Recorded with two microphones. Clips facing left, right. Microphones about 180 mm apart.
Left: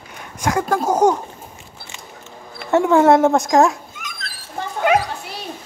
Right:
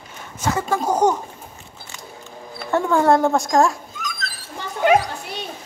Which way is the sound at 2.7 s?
20° left (ahead or behind).